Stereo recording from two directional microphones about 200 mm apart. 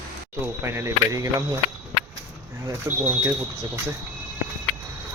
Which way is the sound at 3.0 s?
15° right (ahead or behind).